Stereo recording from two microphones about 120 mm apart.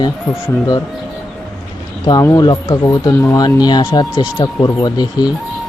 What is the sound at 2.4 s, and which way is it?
Speech, 35° left (ahead or behind).